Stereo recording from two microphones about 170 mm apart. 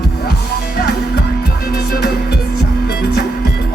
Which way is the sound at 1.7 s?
70° left (ahead or behind).